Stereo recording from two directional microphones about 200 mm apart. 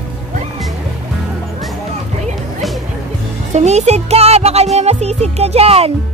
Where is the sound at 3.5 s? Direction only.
35° right (ahead or behind).